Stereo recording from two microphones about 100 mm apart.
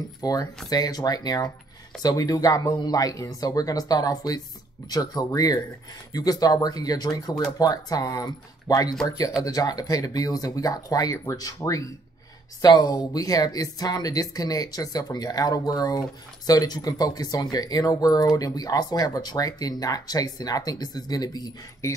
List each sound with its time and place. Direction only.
0.2 s speech: 35° left (ahead or behind)
21.8 s speech: 30° left (ahead or behind)